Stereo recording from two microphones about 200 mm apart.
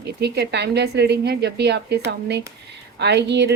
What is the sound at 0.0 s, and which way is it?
A woman's voice, 55° right (ahead or behind).